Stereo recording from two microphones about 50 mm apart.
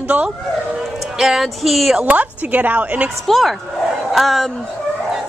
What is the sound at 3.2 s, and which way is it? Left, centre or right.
A woman's voice, centre.